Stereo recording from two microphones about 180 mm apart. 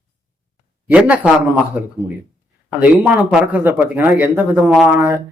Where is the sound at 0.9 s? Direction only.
5° right (ahead or behind).